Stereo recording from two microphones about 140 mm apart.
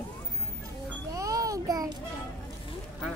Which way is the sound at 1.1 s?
25° right (ahead or behind).